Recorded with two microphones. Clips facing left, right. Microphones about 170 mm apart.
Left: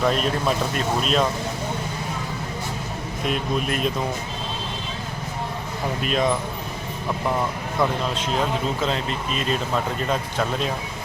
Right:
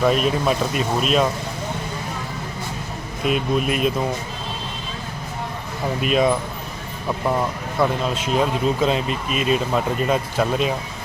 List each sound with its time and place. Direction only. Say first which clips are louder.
0.0 s speech: right 3 dB; 5° right (ahead or behind)
3.2 s speech: right 4 dB; 5° right (ahead or behind)
6.0 s speech: right 4 dB; 10° right (ahead or behind)
7.8 s speech: right 2 dB; 10° right (ahead or behind)